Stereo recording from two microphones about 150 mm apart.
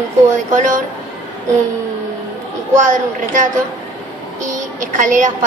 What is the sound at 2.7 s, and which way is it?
A woman's voice, 55° right (ahead or behind).